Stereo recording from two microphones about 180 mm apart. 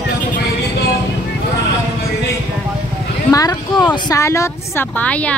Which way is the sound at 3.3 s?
20° left (ahead or behind).